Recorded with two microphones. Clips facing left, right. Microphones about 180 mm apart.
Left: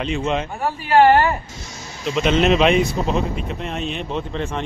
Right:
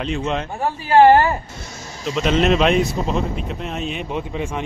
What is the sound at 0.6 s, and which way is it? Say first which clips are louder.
Speech: right 2 dB; 30° right (ahead or behind).